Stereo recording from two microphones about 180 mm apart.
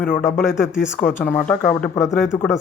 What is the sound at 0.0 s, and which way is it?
Speech, 45° left (ahead or behind).